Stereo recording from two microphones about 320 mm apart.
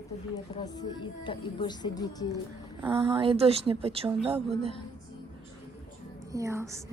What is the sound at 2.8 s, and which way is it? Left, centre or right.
Speech, centre.